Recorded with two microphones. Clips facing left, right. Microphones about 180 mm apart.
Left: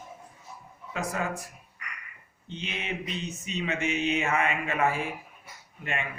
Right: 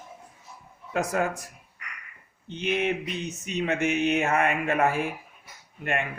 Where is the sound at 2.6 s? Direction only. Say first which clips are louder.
Right 9 dB; 60° right (ahead or behind).